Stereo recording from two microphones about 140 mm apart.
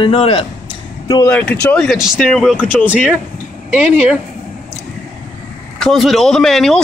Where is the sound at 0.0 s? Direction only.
45° left (ahead or behind).